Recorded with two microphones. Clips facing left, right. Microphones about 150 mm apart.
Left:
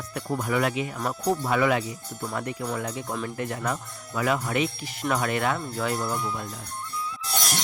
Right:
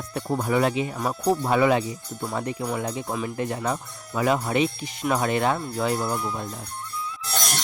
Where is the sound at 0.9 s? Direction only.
15° right (ahead or behind).